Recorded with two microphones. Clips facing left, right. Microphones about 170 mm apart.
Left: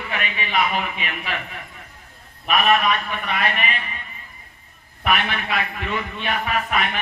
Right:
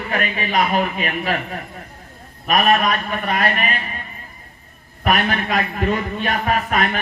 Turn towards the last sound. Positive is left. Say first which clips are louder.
# right 4 dB
turn(degrees=-45)  # may be behind; listen again after turning